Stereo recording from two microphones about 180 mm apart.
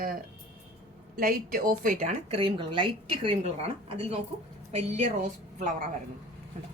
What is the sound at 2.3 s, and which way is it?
A woman's voice, 30° right (ahead or behind).